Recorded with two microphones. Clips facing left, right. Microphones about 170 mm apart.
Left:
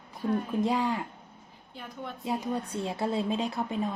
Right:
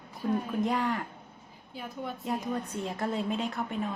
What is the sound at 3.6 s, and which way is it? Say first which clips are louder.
Speech: left 2 dB; 25° left (ahead or behind).